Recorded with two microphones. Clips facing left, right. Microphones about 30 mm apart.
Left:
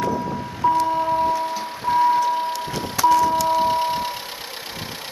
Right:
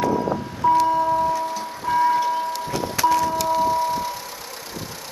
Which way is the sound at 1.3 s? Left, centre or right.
Centre.